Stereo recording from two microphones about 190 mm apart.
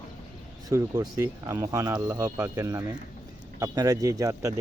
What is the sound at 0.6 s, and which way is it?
Speech, 20° right (ahead or behind).